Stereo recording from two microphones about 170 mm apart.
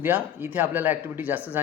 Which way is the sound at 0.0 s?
10° right (ahead or behind).